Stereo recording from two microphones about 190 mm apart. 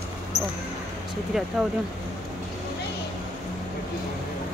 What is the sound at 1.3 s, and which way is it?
Speech, centre (ahead or behind).